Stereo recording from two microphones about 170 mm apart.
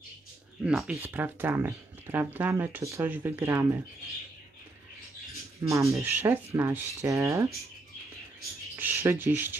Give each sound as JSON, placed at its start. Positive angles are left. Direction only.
{"t": 0.7, "sound": "speech", "side_deg": -5}
{"t": 5.6, "sound": "speech", "side_deg": -15}
{"t": 8.7, "sound": "speech", "side_deg": -15}